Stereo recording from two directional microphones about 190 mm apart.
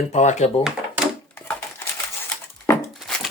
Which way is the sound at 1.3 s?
10° left (ahead or behind).